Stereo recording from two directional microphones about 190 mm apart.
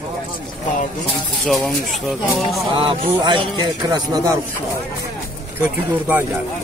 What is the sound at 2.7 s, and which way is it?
Speech, 25° right (ahead or behind).